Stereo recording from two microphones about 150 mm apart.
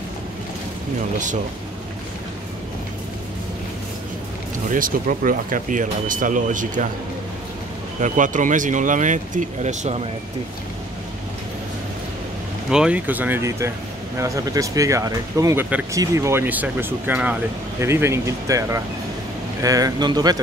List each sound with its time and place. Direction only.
1.1 s speech: 55° right (ahead or behind)
4.6 s speech: 65° right (ahead or behind)
8.0 s speech: 60° right (ahead or behind)
12.6 s speech: 5° right (ahead or behind); by 20.3 s 25° right (ahead or behind)